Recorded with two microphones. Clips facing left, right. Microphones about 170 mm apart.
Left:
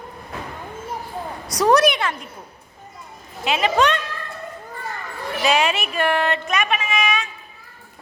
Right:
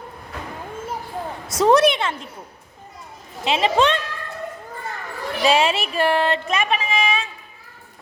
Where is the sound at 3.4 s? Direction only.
25° right (ahead or behind).